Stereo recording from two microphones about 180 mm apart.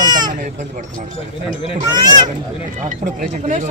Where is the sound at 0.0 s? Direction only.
25° right (ahead or behind).